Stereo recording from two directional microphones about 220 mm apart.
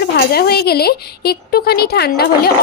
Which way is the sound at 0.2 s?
45° left (ahead or behind).